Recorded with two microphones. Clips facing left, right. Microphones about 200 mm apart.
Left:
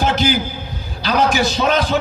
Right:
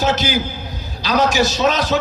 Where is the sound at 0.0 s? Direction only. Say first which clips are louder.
Left 1 dB; 55° left (ahead or behind).